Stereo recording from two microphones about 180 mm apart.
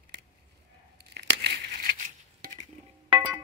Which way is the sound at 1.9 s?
45° right (ahead or behind).